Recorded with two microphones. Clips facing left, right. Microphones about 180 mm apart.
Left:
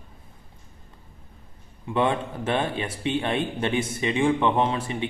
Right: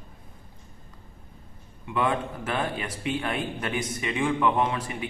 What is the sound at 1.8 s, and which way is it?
A man's voice, 30° left (ahead or behind).